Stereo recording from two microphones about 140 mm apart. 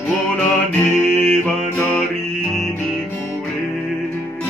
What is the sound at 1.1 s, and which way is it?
Music, 5° left (ahead or behind).